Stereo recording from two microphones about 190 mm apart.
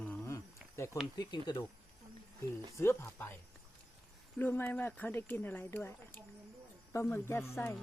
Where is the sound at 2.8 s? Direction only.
15° left (ahead or behind).